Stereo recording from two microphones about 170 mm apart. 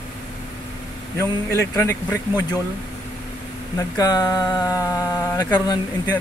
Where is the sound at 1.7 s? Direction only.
15° left (ahead or behind).